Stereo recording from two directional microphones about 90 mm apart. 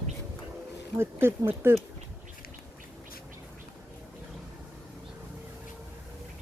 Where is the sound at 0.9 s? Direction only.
25° right (ahead or behind).